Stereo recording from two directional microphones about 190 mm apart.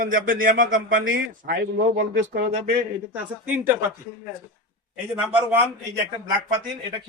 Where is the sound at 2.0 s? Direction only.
70° right (ahead or behind); by 2.8 s 50° right (ahead or behind).